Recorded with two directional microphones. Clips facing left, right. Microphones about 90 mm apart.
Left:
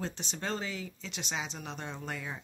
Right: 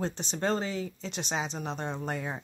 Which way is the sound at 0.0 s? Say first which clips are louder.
Right 7 dB; 35° right (ahead or behind).